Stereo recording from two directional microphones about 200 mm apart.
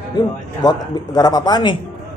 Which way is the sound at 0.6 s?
20° left (ahead or behind).